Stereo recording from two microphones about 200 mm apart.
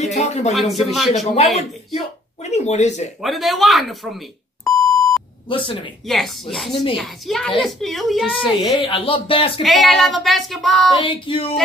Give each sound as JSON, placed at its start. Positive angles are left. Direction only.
{"t": 0.0, "sound": "speech", "side_deg": 35}
{"t": 0.5, "sound": "child singing", "side_deg": 0}
{"t": 1.3, "sound": "speech", "side_deg": 30}
{"t": 3.2, "sound": "child singing", "side_deg": 0}
{"t": 5.5, "sound": "speech", "side_deg": 25}
{"t": 6.0, "sound": "child singing", "side_deg": 0}
{"t": 8.7, "sound": "speech", "side_deg": 25}
{"t": 9.6, "sound": "child singing", "side_deg": 0}
{"t": 11.0, "sound": "speech", "side_deg": 25}